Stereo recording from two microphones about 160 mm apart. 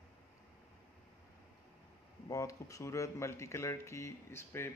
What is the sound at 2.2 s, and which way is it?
Speech, 20° left (ahead or behind).